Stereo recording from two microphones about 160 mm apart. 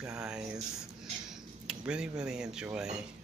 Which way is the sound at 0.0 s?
5° right (ahead or behind).